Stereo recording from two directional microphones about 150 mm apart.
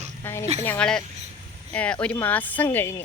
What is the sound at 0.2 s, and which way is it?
Speech, 15° left (ahead or behind).